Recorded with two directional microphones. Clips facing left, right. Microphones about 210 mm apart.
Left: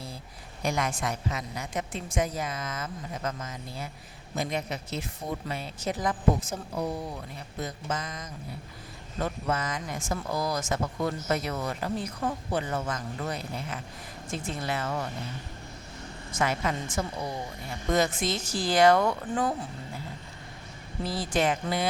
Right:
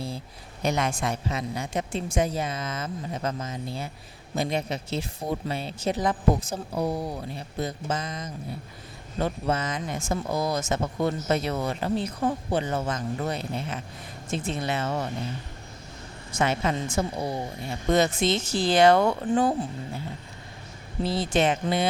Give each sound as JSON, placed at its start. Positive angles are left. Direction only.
{"t": 0.6, "sound": "speech", "side_deg": -25}
{"t": 16.4, "sound": "speech", "side_deg": -25}
{"t": 21.0, "sound": "speech", "side_deg": -25}